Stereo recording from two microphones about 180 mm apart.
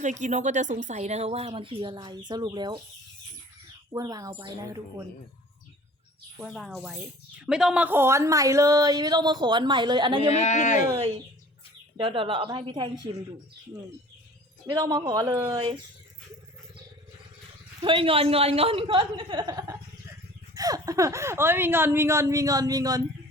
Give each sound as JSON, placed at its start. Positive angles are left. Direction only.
{"t": 0.0, "sound": "speech", "side_deg": -40}
{"t": 3.9, "sound": "speech", "side_deg": -20}
{"t": 6.4, "sound": "speech", "side_deg": 0}
{"t": 10.3, "sound": "speech", "side_deg": 40}
{"t": 11.9, "sound": "speech", "side_deg": -30}
{"t": 14.7, "sound": "speech", "side_deg": -25}
{"t": 17.8, "sound": "speech", "side_deg": -30}